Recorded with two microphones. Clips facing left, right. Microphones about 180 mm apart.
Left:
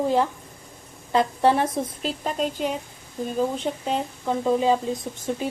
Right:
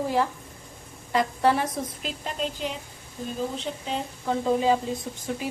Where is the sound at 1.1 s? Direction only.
25° left (ahead or behind); by 3.8 s 50° left (ahead or behind).